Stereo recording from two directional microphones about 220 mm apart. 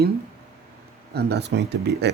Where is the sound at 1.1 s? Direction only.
50° right (ahead or behind).